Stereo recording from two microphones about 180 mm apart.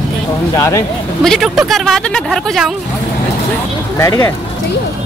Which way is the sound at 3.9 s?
20° left (ahead or behind).